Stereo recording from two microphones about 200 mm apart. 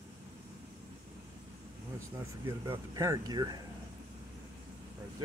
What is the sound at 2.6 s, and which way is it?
Speech, 15° right (ahead or behind).